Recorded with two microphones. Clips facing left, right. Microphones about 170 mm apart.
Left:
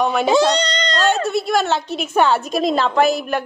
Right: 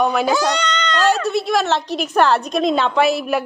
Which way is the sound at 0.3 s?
30° left (ahead or behind).